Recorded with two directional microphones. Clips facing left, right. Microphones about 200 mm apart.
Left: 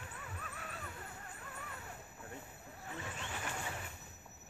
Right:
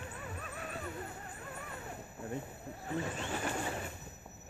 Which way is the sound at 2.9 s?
35° right (ahead or behind).